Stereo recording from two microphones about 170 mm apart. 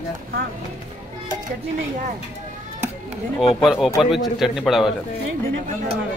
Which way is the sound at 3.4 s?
Centre (ahead or behind).